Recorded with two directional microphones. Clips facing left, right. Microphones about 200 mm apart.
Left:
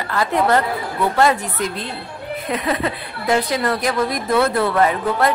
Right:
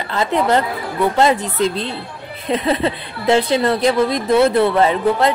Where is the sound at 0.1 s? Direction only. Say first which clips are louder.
Right 1 dB; 20° right (ahead or behind).